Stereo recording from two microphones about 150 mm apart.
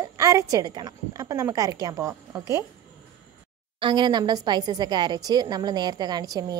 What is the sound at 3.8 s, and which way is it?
A woman's voice, 30° right (ahead or behind).